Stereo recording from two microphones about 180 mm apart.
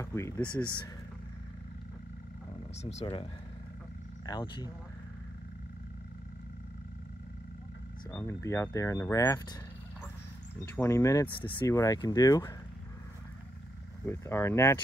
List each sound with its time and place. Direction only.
0.0 s speech: 15° left (ahead or behind)
2.8 s speech: 35° left (ahead or behind)
4.3 s speech: 20° left (ahead or behind)
8.1 s speech: 15° left (ahead or behind)
10.6 s speech: 15° left (ahead or behind)
14.0 s speech: 15° left (ahead or behind)